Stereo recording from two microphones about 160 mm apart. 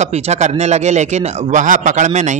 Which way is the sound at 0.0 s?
45° right (ahead or behind).